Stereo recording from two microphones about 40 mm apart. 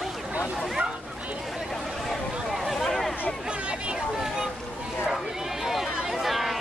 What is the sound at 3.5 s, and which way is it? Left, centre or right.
Chatter, right.